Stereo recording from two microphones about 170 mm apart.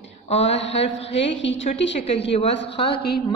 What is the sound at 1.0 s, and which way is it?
Speech, 90° left.